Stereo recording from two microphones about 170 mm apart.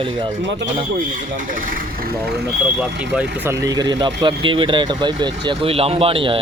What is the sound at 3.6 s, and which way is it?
Speech, 25° right (ahead or behind).